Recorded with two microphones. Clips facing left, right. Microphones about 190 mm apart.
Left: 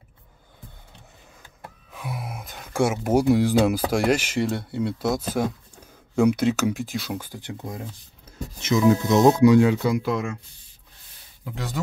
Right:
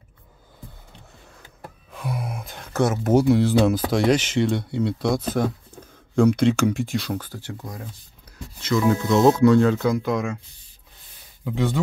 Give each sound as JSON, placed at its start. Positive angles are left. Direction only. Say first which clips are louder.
{"t": 1.9, "sound": "speech", "louder": "right 4 dB", "side_deg": 5}
{"t": 7.2, "sound": "speech", "louder": "left 1 dB", "side_deg": 15}